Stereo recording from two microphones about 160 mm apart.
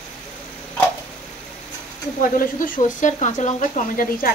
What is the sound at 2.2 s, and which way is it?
Speech, 60° left (ahead or behind).